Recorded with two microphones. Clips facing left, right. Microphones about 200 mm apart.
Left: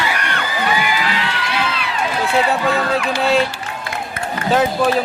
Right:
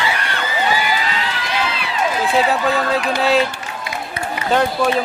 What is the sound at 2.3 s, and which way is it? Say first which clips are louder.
Speech: left 1 dB; centre (ahead or behind).